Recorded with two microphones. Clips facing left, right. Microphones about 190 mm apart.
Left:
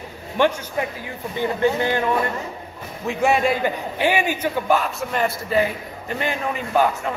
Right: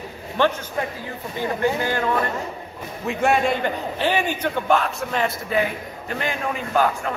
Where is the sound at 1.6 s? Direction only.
20° left (ahead or behind).